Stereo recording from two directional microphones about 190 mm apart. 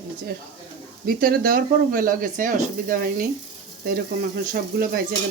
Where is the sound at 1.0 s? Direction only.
50° right (ahead or behind).